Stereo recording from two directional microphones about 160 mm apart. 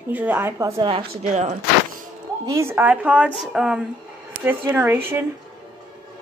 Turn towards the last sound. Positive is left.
turn(degrees=-15)  # may be behind; listen again after turning